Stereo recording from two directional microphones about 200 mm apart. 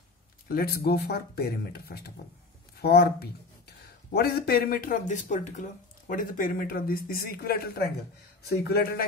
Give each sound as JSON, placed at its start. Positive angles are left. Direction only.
{"t": 0.5, "sound": "speech", "side_deg": 50}